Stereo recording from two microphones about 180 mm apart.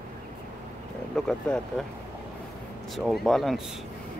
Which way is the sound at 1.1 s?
5° left (ahead or behind).